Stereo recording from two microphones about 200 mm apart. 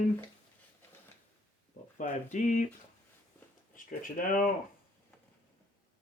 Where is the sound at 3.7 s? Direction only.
40° left (ahead or behind).